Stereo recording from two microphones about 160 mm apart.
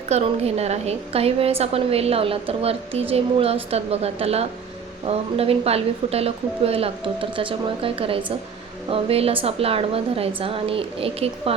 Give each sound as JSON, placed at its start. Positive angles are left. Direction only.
{"t": 0.1, "sound": "a woman's voice", "side_deg": -40}